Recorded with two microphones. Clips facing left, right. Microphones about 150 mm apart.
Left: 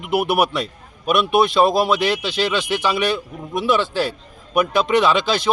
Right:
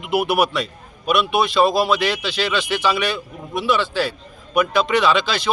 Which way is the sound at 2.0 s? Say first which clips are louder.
Left 2 dB; 20° left (ahead or behind).